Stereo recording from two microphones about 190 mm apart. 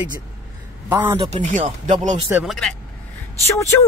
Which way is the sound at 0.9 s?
10° right (ahead or behind).